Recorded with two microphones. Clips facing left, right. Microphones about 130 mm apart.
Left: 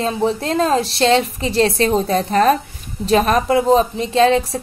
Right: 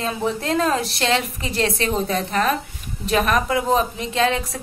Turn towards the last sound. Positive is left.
turn(degrees=30)  # may be behind; listen again after turning